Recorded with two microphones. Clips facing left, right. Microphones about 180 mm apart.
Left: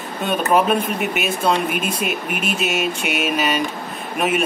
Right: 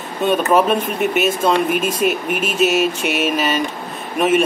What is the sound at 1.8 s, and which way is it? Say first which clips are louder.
Speech: right 5 dB; 45° right (ahead or behind).